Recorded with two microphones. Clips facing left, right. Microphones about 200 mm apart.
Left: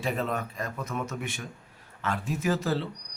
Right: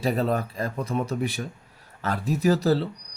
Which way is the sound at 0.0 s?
35° right (ahead or behind).